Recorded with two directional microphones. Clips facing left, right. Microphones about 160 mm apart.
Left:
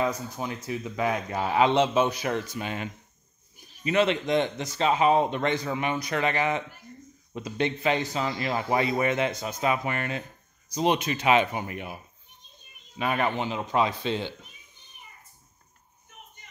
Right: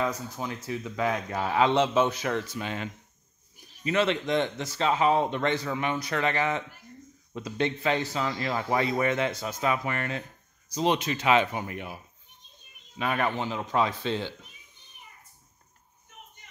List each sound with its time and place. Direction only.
0.0 s a man's voice: 15° left (ahead or behind)